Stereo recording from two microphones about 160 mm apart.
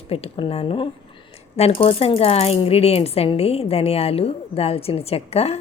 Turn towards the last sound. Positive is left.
turn(degrees=40)  # may be behind; listen again after turning